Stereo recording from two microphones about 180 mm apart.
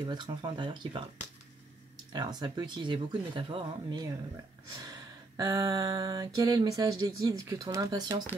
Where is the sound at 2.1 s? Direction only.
25° right (ahead or behind).